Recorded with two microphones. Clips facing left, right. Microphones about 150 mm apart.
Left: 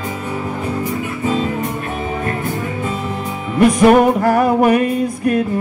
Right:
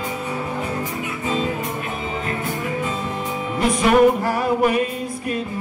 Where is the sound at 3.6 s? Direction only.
55° left (ahead or behind).